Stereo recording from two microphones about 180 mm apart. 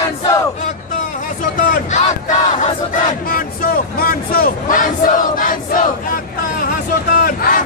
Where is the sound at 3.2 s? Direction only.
50° left (ahead or behind).